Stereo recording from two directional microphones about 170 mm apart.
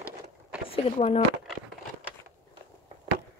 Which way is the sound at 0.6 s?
35° left (ahead or behind).